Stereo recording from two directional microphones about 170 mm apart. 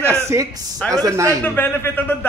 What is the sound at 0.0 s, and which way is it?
A man's voice, 15° right (ahead or behind).